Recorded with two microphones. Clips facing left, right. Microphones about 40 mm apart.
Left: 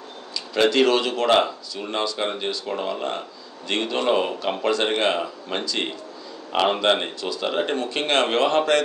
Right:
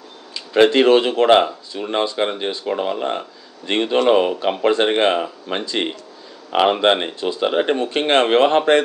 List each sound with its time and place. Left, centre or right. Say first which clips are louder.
0.5 s speech: right 6 dB; right